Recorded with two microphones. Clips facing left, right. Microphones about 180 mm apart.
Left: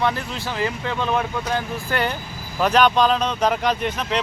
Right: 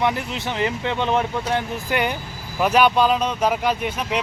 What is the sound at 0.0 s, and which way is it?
Speech, 15° right (ahead or behind).